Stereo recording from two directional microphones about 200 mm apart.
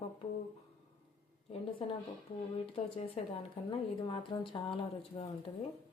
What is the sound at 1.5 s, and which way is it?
A woman's voice, 30° left (ahead or behind).